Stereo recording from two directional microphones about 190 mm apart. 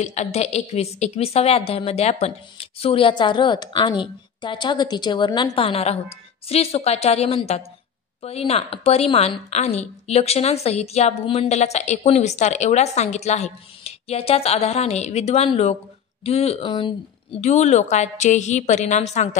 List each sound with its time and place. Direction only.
0.0 s a woman's voice: 35° left (ahead or behind)
17.4 s a woman's voice: 35° left (ahead or behind)